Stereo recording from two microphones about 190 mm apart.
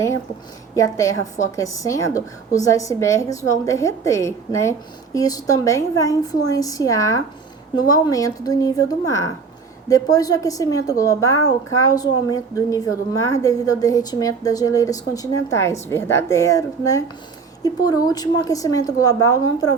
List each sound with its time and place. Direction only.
0.8 s a woman's voice: 15° left (ahead or behind)